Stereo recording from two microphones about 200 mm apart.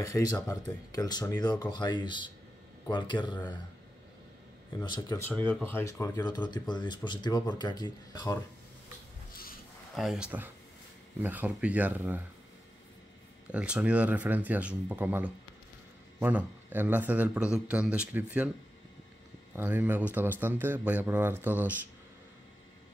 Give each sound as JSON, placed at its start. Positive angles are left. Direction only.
{"t": 0.0, "sound": "speech", "side_deg": 15}
{"t": 4.8, "sound": "speech", "side_deg": 20}
{"t": 9.9, "sound": "a man's voice", "side_deg": 0}
{"t": 13.5, "sound": "a man's voice", "side_deg": -5}
{"t": 19.5, "sound": "a man's voice", "side_deg": -10}